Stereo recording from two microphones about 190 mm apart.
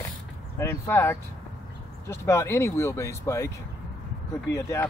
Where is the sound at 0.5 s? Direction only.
10° left (ahead or behind).